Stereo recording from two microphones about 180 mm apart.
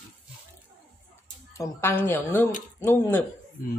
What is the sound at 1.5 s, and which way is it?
A woman's voice, 15° left (ahead or behind).